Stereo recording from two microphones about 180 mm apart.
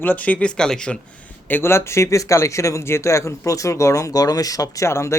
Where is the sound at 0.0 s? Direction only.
10° left (ahead or behind).